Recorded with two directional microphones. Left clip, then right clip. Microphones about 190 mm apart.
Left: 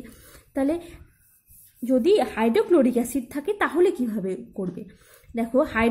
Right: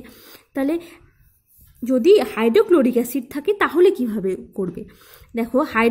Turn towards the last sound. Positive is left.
turn(degrees=-45)  # may be behind; listen again after turning